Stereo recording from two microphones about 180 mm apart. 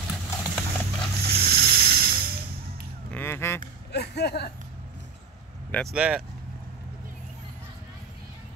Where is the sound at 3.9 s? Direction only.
65° left (ahead or behind).